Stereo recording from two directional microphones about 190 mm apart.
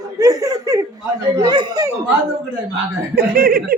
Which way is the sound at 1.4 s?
20° right (ahead or behind).